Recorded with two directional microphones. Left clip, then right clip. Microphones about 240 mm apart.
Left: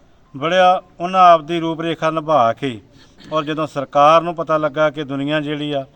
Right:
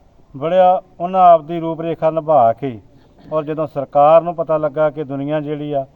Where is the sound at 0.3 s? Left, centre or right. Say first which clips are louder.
Right 1 dB; centre.